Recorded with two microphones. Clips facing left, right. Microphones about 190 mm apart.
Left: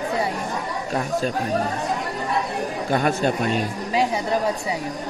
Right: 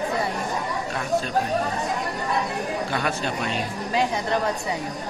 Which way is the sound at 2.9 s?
45° left (ahead or behind).